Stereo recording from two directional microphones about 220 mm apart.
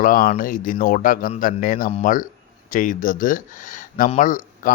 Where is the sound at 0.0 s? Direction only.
40° left (ahead or behind).